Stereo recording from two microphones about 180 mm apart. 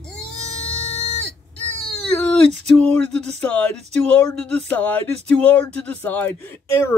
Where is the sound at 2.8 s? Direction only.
5° left (ahead or behind).